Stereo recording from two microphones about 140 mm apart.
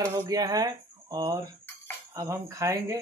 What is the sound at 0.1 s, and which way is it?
Speech, 25° right (ahead or behind).